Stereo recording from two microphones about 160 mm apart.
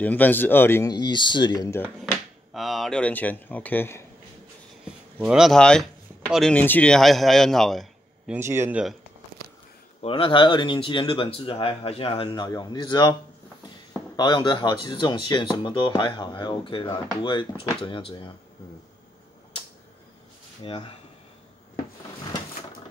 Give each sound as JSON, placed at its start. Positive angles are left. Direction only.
{"t": 0.0, "sound": "speech", "side_deg": 10}
{"t": 0.9, "sound": "speech", "side_deg": 30}
{"t": 2.5, "sound": "speech", "side_deg": 0}
{"t": 5.2, "sound": "a man's voice", "side_deg": -5}
{"t": 8.4, "sound": "a man's voice", "side_deg": -15}
{"t": 10.0, "sound": "speech", "side_deg": 35}
{"t": 14.1, "sound": "speech", "side_deg": 30}
{"t": 20.6, "sound": "speech", "side_deg": 35}